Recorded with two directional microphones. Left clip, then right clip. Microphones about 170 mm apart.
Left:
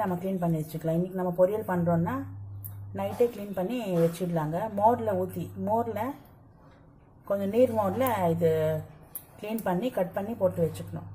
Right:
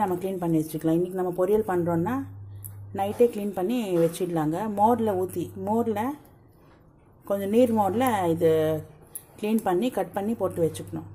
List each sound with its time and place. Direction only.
0.0 s a woman's voice: 50° right (ahead or behind)
7.2 s a woman's voice: 45° right (ahead or behind)